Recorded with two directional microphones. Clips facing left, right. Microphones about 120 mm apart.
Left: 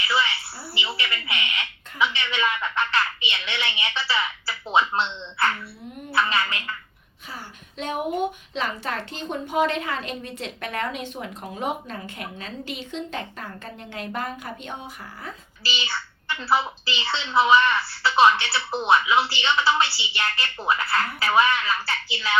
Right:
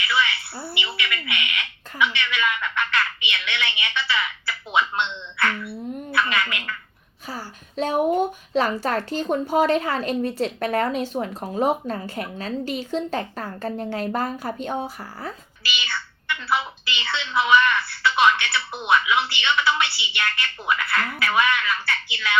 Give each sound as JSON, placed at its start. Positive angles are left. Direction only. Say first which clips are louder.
{"t": 0.7, "sound": "a child's voice", "louder": "even", "side_deg": 35}
{"t": 7.3, "sound": "a woman's voice", "louder": "right 5 dB", "side_deg": -40}
{"t": 15.6, "sound": "a child's voice", "louder": "even", "side_deg": 30}